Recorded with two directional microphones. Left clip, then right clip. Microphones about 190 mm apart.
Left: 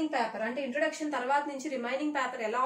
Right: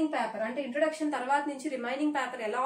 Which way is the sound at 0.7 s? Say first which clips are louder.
Right 3 dB; 20° right (ahead or behind).